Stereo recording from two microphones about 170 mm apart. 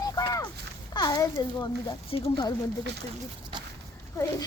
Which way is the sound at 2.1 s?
30° left (ahead or behind).